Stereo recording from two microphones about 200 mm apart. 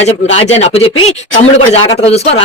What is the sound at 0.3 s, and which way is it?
Speech, 30° left (ahead or behind).